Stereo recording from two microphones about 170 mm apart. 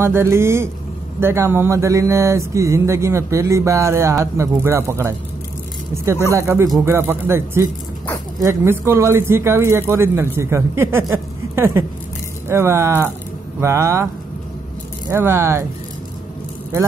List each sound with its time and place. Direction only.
0.0 s speech: 15° right (ahead or behind)
6.3 s speech: 15° right (ahead or behind)
15.0 s speech: 15° right (ahead or behind)